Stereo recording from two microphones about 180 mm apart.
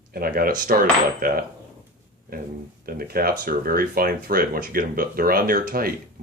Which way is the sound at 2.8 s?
55° right (ahead or behind).